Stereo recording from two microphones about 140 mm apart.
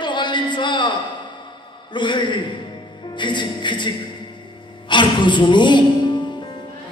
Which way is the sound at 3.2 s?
35° left (ahead or behind).